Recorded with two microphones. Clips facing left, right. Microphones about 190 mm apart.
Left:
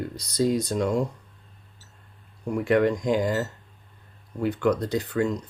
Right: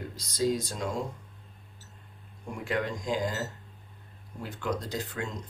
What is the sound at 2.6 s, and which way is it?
Speech, 60° left (ahead or behind).